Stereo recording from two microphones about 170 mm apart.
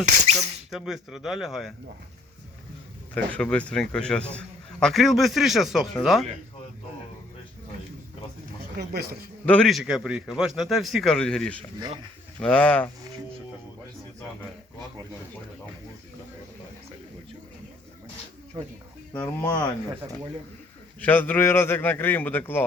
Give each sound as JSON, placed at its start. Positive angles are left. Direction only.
{"t": 0.3, "sound": "a man's voice", "side_deg": 0}
{"t": 3.2, "sound": "a man's voice", "side_deg": 5}
{"t": 8.8, "sound": "speech", "side_deg": -65}
{"t": 9.5, "sound": "a man's voice", "side_deg": 5}
{"t": 18.5, "sound": "speech", "side_deg": -25}
{"t": 19.1, "sound": "a man's voice", "side_deg": 10}
{"t": 21.0, "sound": "a man's voice", "side_deg": 10}